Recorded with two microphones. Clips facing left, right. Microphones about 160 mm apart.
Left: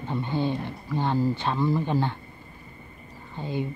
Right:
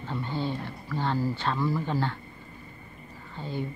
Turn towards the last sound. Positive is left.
turn(degrees=15)  # may be behind; listen again after turning